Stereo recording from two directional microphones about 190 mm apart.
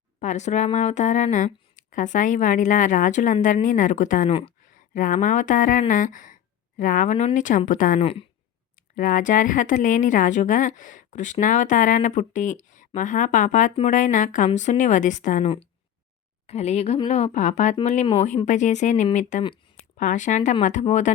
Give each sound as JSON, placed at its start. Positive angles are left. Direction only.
{"t": 0.2, "sound": "a woman's voice", "side_deg": 40}
{"t": 4.3, "sound": "speech", "side_deg": 30}
{"t": 4.9, "sound": "a woman's voice", "side_deg": 45}